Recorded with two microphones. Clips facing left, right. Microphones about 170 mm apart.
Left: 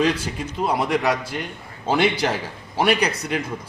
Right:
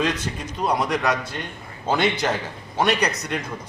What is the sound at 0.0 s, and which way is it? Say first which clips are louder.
A man's voice: left 3 dB; 10° left (ahead or behind).